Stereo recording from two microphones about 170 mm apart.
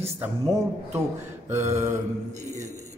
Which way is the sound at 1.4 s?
15° right (ahead or behind).